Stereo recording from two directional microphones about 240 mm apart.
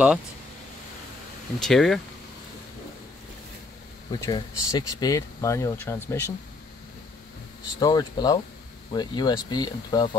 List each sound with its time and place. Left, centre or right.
1.6 s speech: centre
4.1 s speech: centre
7.8 s speech: centre